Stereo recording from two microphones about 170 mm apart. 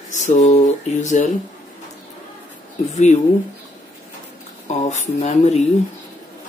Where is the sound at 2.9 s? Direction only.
40° left (ahead or behind).